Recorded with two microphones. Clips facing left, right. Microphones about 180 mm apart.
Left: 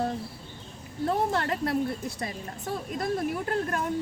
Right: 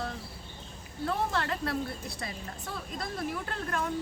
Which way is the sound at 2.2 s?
40° left (ahead or behind).